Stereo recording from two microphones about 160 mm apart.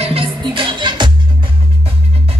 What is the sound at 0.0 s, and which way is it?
Music, 35° right (ahead or behind).